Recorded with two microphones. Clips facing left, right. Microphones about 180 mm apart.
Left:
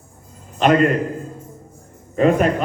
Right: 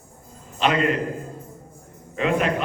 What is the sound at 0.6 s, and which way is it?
Speech, 50° left (ahead or behind).